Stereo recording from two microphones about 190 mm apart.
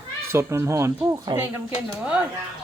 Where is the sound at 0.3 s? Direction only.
15° right (ahead or behind).